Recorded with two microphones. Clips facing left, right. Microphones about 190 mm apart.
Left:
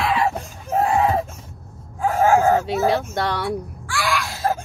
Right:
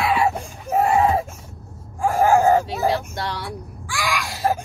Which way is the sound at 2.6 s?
60° left (ahead or behind).